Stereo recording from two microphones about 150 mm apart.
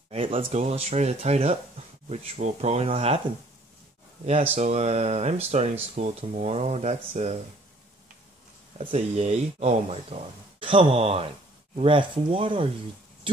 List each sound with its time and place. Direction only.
0.1 s speech: 40° right (ahead or behind)
4.6 s speech: 45° right (ahead or behind)
8.7 s speech: 45° right (ahead or behind)